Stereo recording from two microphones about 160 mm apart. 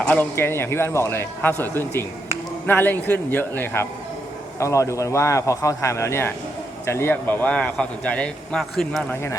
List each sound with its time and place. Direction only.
0.0 s a man's voice: 10° left (ahead or behind)